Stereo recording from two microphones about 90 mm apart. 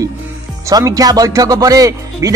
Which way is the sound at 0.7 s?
40° right (ahead or behind).